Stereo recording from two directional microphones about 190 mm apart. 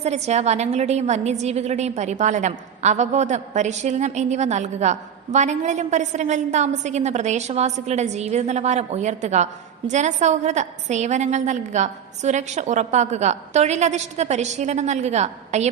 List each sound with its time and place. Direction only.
0.0 s a woman's voice: 35° right (ahead or behind)